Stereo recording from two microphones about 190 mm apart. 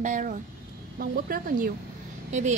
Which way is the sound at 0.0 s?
40° right (ahead or behind).